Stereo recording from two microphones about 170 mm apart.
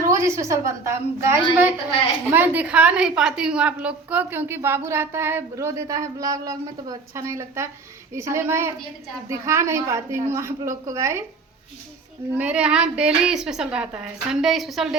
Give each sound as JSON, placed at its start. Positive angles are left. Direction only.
{"t": 0.1, "sound": "speech", "side_deg": -15}
{"t": 12.3, "sound": "speech", "side_deg": -5}